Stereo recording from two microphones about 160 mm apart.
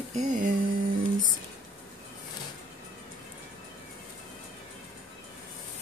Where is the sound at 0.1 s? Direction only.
50° right (ahead or behind).